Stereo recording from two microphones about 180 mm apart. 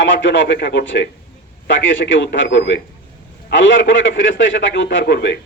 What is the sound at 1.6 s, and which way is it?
A man's voice, 90° left.